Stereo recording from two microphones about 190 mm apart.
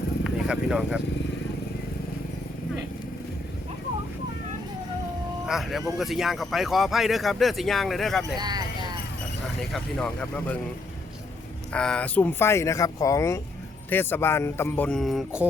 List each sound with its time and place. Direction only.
0.3 s speech: centre (ahead or behind)
5.5 s speech: centre (ahead or behind)
8.4 s speech: 20° right (ahead or behind)
9.6 s speech: 5° left (ahead or behind)
11.7 s speech: 5° left (ahead or behind)